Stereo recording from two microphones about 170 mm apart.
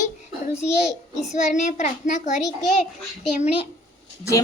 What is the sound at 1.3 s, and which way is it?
A child's voice, 45° left (ahead or behind).